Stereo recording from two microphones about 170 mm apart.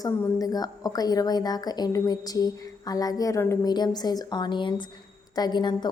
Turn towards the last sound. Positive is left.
turn(degrees=25)  # may be behind; listen again after turning